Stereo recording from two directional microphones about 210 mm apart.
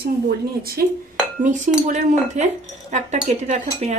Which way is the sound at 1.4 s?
35° right (ahead or behind).